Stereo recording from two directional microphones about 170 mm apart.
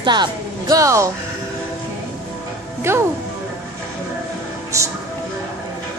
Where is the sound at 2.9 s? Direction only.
15° right (ahead or behind).